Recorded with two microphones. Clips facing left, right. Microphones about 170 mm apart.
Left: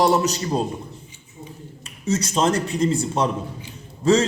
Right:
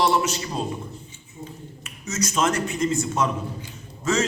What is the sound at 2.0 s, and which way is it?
A man's voice, 30° left (ahead or behind).